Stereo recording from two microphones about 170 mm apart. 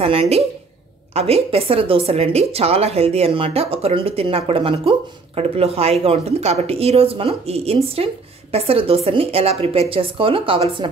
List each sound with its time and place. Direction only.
0.0 s a woman's voice: 35° right (ahead or behind)